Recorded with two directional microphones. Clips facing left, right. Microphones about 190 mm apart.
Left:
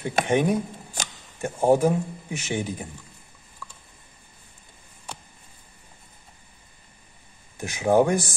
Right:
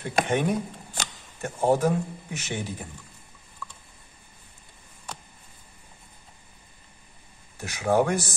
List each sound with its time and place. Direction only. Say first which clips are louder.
0.0 s speech: left 3 dB; 15° left (ahead or behind)
7.5 s speech: left 3 dB; 15° left (ahead or behind)